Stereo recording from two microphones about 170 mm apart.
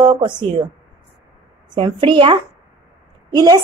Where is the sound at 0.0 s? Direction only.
30° right (ahead or behind).